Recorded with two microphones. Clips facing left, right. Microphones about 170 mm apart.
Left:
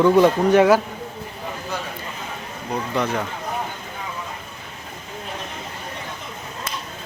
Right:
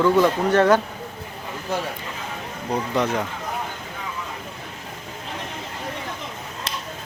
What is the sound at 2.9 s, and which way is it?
Speech, 20° right (ahead or behind).